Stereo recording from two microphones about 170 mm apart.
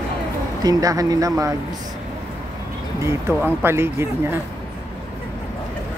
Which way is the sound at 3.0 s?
15° right (ahead or behind).